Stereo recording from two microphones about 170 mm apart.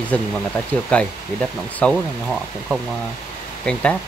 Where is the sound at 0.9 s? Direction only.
5° left (ahead or behind).